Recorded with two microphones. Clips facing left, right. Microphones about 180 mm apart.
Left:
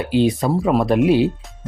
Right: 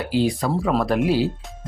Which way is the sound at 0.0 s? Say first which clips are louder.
Left 4 dB; 20° left (ahead or behind).